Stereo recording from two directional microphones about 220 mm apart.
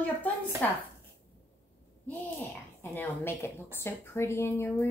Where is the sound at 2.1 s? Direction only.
10° left (ahead or behind).